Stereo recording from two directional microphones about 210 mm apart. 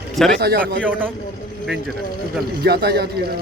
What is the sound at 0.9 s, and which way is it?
Speech, 10° right (ahead or behind).